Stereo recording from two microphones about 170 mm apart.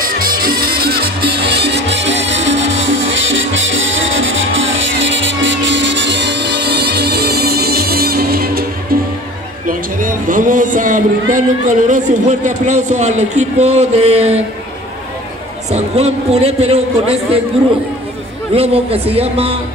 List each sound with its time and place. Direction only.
0.0 s music: 60° right (ahead or behind)
9.7 s a man's voice: 55° right (ahead or behind)
15.7 s a man's voice: 40° right (ahead or behind)
18.5 s a man's voice: 35° right (ahead or behind)